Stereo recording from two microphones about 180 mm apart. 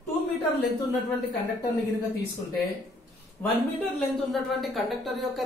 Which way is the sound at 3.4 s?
10° left (ahead or behind).